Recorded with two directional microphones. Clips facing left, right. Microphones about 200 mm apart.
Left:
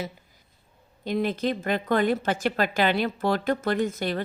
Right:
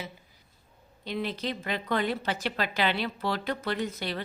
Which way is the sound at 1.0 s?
45° left (ahead or behind).